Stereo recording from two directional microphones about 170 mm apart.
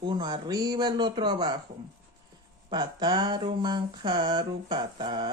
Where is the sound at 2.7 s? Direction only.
25° right (ahead or behind).